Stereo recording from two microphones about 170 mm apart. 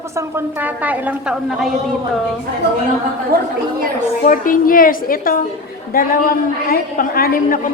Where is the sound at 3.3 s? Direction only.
65° right (ahead or behind).